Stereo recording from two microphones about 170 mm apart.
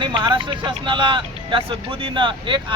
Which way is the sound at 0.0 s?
30° right (ahead or behind).